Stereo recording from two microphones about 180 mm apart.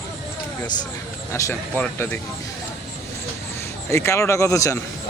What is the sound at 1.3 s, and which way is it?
Speech, 15° left (ahead or behind).